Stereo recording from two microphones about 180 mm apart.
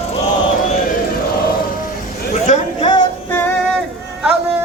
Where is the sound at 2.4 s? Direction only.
40° left (ahead or behind).